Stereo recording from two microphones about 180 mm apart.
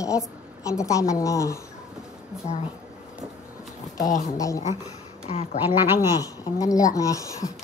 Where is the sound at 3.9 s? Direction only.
20° left (ahead or behind).